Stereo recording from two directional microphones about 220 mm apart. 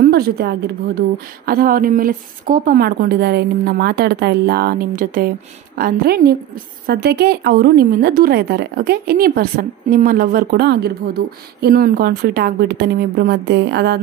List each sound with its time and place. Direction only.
0.0 s a woman's voice: 45° right (ahead or behind)